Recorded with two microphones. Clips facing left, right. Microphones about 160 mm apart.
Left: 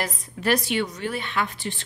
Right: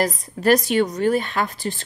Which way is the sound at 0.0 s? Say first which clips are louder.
Right 7 dB; 40° right (ahead or behind).